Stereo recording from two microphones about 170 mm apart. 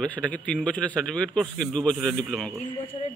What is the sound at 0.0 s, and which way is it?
A man's voice, 10° left (ahead or behind).